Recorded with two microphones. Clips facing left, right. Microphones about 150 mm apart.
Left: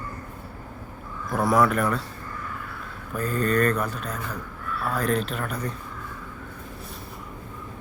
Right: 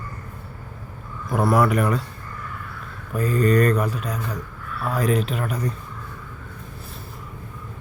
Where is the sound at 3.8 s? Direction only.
10° right (ahead or behind).